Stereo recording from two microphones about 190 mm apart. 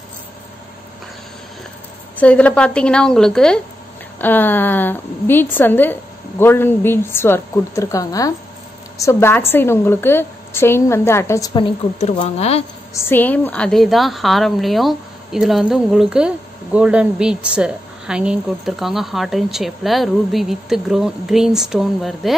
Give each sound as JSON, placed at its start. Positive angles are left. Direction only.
{"t": 2.1, "sound": "a woman's voice", "side_deg": 5}
{"t": 12.9, "sound": "a woman's voice", "side_deg": 10}